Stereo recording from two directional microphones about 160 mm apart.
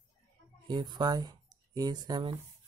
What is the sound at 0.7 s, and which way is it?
Speech, 25° right (ahead or behind).